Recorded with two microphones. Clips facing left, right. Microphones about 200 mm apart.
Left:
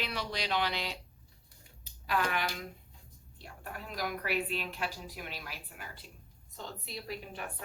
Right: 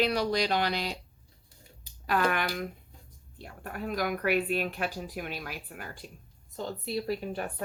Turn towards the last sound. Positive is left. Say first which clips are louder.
# right 9 dB
turn(degrees=-40)  # may be behind; listen again after turning